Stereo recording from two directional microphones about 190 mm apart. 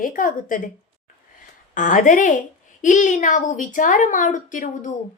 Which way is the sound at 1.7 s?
45° left (ahead or behind).